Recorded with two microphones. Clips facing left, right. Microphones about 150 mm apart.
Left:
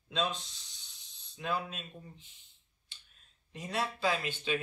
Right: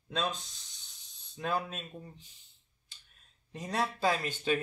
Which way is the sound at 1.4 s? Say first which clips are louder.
Right 2 dB; 40° right (ahead or behind).